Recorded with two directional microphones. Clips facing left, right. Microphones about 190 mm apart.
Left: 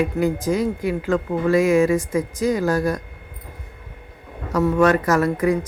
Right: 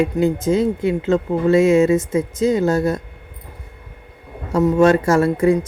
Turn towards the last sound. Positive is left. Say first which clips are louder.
# right 4 dB
turn(degrees=-25)  # may be behind; listen again after turning